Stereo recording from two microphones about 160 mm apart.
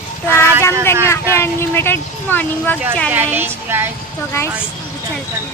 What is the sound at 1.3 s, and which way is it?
Speech, 15° left (ahead or behind).